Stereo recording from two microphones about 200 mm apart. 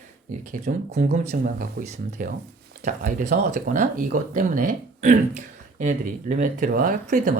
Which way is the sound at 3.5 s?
40° right (ahead or behind).